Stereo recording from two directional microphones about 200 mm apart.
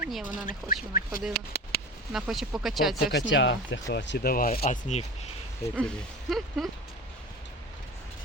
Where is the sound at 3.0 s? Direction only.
60° left (ahead or behind); by 5.0 s 35° left (ahead or behind).